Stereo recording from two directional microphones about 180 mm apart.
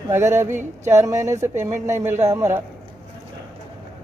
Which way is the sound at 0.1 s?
15° right (ahead or behind).